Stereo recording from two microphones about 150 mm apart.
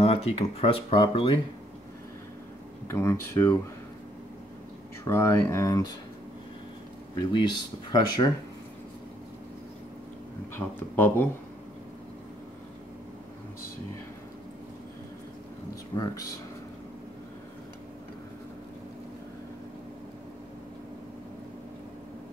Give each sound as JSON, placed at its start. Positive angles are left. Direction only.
{"t": 0.0, "sound": "speech", "side_deg": 40}
{"t": 2.9, "sound": "speech", "side_deg": 20}
{"t": 5.0, "sound": "speech", "side_deg": 15}
{"t": 7.2, "sound": "speech", "side_deg": 30}
{"t": 10.5, "sound": "speech", "side_deg": 15}
{"t": 15.7, "sound": "speech", "side_deg": 25}